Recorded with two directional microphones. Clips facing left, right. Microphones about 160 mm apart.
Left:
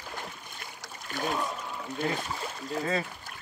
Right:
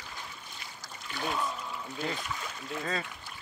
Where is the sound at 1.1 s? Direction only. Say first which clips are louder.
Left 3 dB; 45° left (ahead or behind).